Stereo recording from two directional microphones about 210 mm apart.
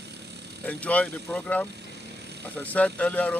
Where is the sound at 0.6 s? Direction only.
5° left (ahead or behind).